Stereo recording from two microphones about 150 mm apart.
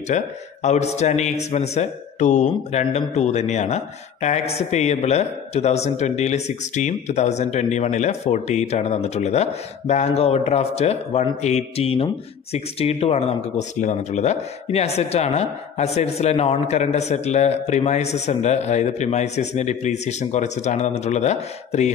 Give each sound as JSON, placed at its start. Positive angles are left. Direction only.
{"t": 0.1, "sound": "speech", "side_deg": 50}